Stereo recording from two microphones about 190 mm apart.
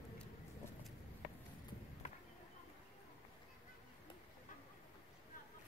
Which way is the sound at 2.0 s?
35° left (ahead or behind).